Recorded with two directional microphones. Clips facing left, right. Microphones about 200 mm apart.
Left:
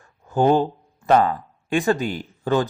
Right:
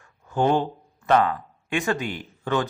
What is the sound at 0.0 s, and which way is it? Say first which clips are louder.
A man's voice: left 4 dB; 35° left (ahead or behind).